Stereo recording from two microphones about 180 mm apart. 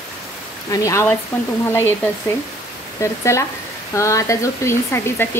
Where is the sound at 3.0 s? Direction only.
15° left (ahead or behind).